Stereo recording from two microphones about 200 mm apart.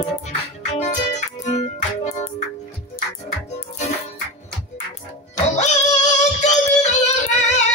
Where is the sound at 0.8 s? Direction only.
35° left (ahead or behind).